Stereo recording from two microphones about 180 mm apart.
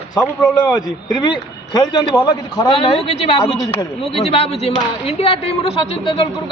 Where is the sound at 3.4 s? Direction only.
30° left (ahead or behind).